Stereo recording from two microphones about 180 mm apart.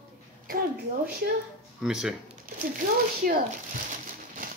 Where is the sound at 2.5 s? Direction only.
50° right (ahead or behind).